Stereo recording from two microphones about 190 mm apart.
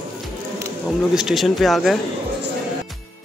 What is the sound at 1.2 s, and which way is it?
Speech, centre (ahead or behind).